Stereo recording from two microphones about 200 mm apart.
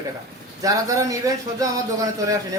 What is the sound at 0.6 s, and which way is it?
Speech, 15° right (ahead or behind).